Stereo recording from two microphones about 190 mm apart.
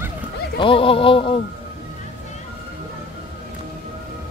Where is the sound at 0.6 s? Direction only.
30° left (ahead or behind).